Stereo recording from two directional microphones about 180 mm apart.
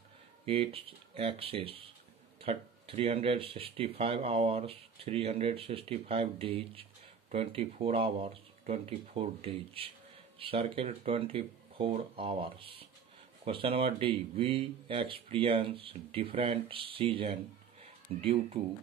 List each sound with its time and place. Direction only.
0.5 s speech: 30° right (ahead or behind)